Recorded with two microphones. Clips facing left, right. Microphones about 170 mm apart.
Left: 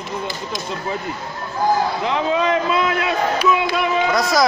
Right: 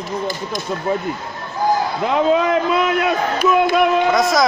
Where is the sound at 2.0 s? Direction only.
55° right (ahead or behind).